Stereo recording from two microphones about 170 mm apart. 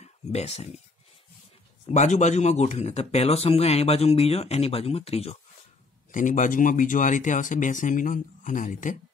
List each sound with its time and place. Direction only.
0.0 s speech: 40° left (ahead or behind)
1.9 s speech: 45° left (ahead or behind)
6.1 s speech: 50° left (ahead or behind)